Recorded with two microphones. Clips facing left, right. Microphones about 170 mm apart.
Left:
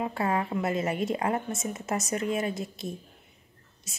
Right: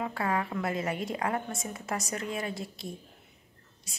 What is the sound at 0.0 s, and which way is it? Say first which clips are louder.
A woman's voice: left 3 dB; 25° left (ahead or behind).